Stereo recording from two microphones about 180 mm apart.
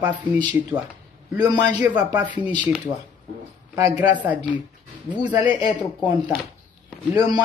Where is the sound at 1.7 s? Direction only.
10° right (ahead or behind).